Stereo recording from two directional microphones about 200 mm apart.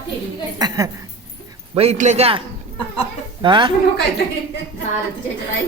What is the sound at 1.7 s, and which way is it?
Speech, 30° right (ahead or behind).